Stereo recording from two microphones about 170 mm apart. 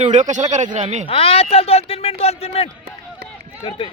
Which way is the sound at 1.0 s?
35° left (ahead or behind).